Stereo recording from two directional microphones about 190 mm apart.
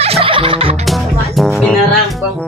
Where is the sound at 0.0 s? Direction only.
30° right (ahead or behind).